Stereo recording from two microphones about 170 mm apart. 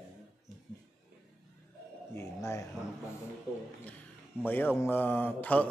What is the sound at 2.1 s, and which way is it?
Speech, 15° left (ahead or behind).